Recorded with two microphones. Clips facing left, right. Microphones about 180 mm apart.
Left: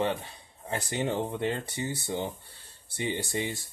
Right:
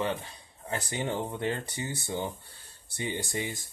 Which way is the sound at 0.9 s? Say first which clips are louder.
Left 3 dB; 60° left (ahead or behind).